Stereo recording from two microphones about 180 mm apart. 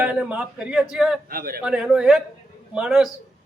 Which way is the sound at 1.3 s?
55° right (ahead or behind).